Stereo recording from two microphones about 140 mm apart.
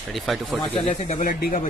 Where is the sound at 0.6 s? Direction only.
40° left (ahead or behind).